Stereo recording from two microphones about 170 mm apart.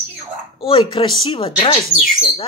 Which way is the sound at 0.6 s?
30° left (ahead or behind).